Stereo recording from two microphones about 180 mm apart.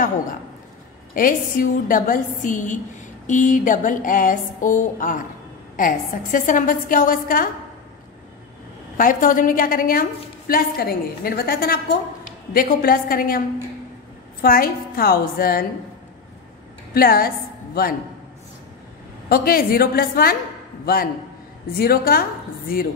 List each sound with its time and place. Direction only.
1.1 s a woman's voice: 50° left (ahead or behind)
8.9 s a woman's voice: 50° left (ahead or behind)
14.4 s a woman's voice: 55° left (ahead or behind)
16.9 s a woman's voice: 55° left (ahead or behind)
19.2 s a woman's voice: 55° left (ahead or behind)